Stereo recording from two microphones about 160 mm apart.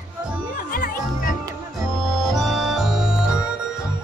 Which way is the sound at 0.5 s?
60° left (ahead or behind).